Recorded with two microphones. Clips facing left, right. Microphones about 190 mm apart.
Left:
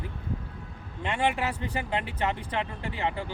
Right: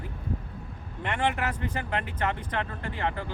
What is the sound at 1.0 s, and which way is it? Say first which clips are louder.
Speech: left 1 dB; 15° left (ahead or behind).